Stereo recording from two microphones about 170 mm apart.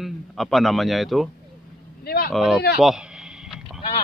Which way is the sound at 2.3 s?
Centre (ahead or behind).